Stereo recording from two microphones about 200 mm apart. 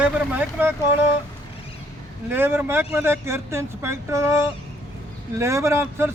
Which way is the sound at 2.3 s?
10° right (ahead or behind).